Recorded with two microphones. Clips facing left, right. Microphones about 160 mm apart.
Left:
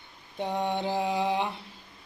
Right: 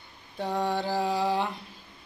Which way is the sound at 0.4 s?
20° left (ahead or behind).